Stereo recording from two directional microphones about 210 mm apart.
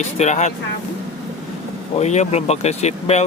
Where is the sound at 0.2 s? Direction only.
35° left (ahead or behind).